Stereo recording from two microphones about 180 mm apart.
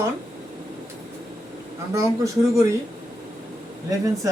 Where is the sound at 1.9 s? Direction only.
15° right (ahead or behind).